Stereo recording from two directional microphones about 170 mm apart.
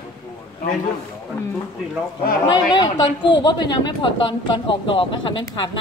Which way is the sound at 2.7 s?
25° left (ahead or behind).